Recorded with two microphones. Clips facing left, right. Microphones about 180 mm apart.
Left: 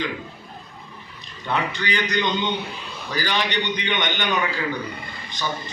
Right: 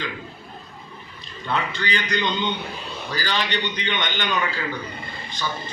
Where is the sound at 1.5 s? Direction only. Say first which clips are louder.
Left 1 dB; 15° left (ahead or behind).